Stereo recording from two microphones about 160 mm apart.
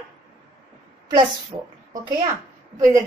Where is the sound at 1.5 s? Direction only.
40° right (ahead or behind).